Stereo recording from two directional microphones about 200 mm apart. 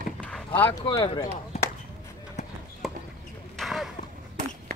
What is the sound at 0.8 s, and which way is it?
Speech, 20° left (ahead or behind).